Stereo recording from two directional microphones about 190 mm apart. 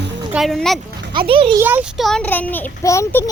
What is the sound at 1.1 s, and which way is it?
Speech, 25° right (ahead or behind).